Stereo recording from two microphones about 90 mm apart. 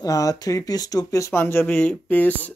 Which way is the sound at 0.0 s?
40° left (ahead or behind).